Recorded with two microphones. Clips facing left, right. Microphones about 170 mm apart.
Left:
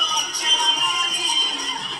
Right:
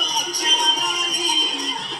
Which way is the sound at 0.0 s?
40° right (ahead or behind).